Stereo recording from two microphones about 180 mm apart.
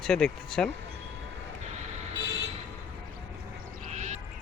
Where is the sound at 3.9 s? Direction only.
40° right (ahead or behind).